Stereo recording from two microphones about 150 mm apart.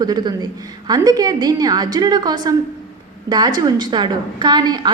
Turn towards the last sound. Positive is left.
turn(degrees=-25)  # may be behind; listen again after turning